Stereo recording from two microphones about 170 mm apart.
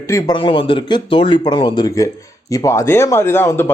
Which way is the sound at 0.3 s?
30° left (ahead or behind).